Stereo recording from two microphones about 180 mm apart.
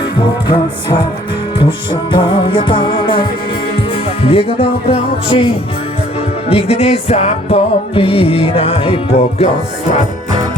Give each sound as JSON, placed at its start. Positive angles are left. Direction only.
{"t": 0.4, "sound": "music", "side_deg": 25}
{"t": 6.5, "sound": "music", "side_deg": 35}